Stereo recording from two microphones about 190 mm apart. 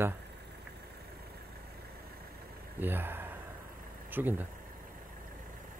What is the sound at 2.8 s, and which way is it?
Speech, 10° right (ahead or behind).